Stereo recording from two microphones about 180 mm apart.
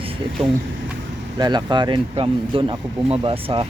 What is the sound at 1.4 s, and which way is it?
Speech, 25° right (ahead or behind).